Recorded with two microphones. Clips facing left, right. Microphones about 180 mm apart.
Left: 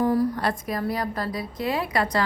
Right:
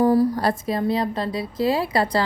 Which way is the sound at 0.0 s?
35° right (ahead or behind).